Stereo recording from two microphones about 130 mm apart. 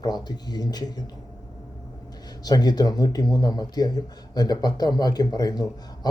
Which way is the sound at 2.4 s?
30° left (ahead or behind).